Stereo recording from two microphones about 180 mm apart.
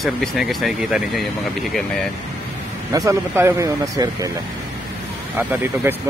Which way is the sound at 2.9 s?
15° right (ahead or behind).